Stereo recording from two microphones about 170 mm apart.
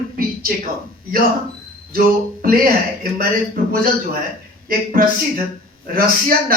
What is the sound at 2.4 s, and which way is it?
Speech, 55° right (ahead or behind).